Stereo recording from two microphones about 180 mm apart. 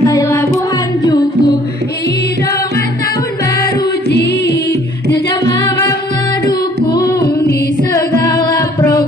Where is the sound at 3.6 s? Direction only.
60° left (ahead or behind).